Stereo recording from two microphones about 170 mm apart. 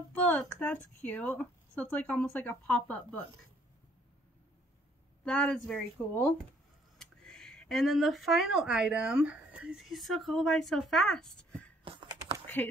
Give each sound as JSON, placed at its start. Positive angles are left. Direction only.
{"t": 0.1, "sound": "a woman's voice", "side_deg": 10}
{"t": 5.2, "sound": "a woman's voice", "side_deg": 5}
{"t": 11.8, "sound": "a sound", "side_deg": -30}
{"t": 12.6, "sound": "a woman's voice", "side_deg": 10}